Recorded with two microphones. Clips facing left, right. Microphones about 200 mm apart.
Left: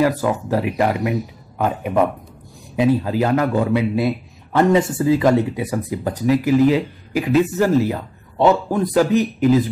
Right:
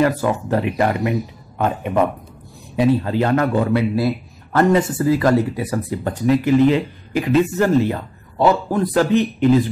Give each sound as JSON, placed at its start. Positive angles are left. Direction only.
{"t": 0.0, "sound": "speech", "side_deg": 0}
{"t": 5.0, "sound": "speech", "side_deg": 15}
{"t": 5.3, "sound": "speech", "side_deg": 0}